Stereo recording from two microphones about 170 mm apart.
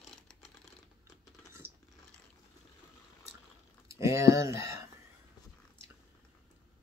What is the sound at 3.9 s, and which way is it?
Speech, 15° right (ahead or behind).